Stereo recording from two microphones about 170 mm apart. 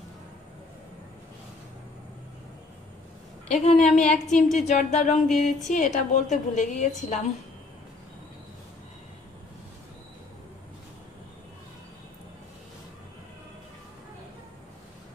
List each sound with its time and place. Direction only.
3.4 s a woman's voice: 45° left (ahead or behind)